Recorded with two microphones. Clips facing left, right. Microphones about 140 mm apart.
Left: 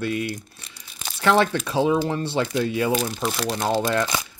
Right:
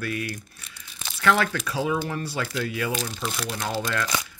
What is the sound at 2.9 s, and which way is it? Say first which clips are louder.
Speech: left 6 dB; 45° left (ahead or behind).